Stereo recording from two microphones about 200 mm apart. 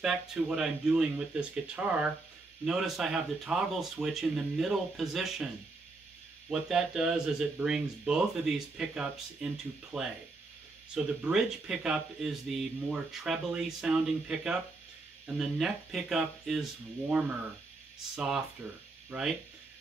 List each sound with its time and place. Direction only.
0.0 s speech: centre (ahead or behind)
6.5 s speech: 5° right (ahead or behind)
11.2 s speech: 5° right (ahead or behind)
18.1 s speech: 5° right (ahead or behind)